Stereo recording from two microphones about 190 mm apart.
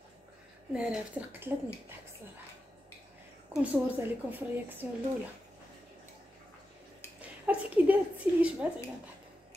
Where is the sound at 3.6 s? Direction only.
10° right (ahead or behind).